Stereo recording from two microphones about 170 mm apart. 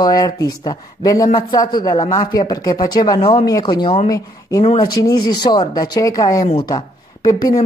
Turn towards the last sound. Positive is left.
turn(degrees=25)  # may be behind; listen again after turning